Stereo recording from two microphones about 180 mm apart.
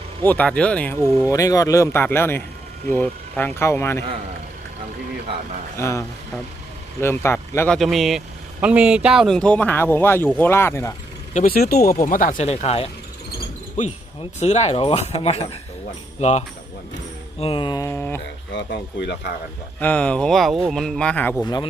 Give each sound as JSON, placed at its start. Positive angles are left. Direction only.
{"t": 0.3, "sound": "speech", "side_deg": 5}
{"t": 1.2, "sound": "speech", "side_deg": 20}
{"t": 5.7, "sound": "speech", "side_deg": 15}
{"t": 7.8, "sound": "speech", "side_deg": 0}
{"t": 11.3, "sound": "speech", "side_deg": 55}
{"t": 14.2, "sound": "speech", "side_deg": 40}
{"t": 17.4, "sound": "speech", "side_deg": 30}
{"t": 18.5, "sound": "speech", "side_deg": 70}
{"t": 19.8, "sound": "speech", "side_deg": 10}
{"t": 21.4, "sound": "speech", "side_deg": 25}